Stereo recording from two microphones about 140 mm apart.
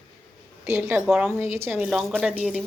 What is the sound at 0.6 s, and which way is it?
Speech, 15° right (ahead or behind).